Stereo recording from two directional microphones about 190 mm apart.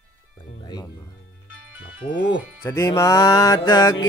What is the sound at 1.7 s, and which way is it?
Speech, 85° left.